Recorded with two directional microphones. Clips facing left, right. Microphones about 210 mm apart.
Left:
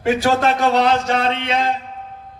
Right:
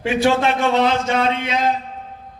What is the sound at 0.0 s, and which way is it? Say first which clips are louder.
A man's voice: even; 40° left (ahead or behind).